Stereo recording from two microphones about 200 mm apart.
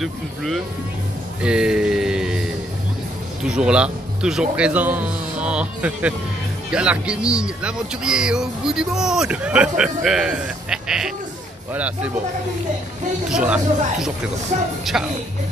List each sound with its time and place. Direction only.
0.0 s speech: centre (ahead or behind)
1.4 s a sound: 5° right (ahead or behind)
3.4 s speech: 5° right (ahead or behind)
13.3 s speech: 5° right (ahead or behind)
14.5 s speech: 35° right (ahead or behind)
14.9 s speech: 5° right (ahead or behind)